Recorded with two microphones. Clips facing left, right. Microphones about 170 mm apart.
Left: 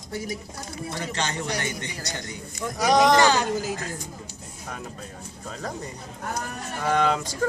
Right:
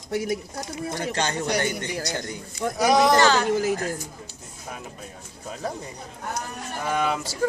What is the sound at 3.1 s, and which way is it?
Speech, 15° left (ahead or behind).